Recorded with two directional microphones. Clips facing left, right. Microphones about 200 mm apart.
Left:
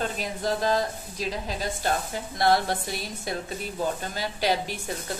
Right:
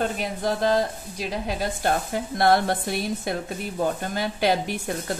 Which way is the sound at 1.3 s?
55° right (ahead or behind).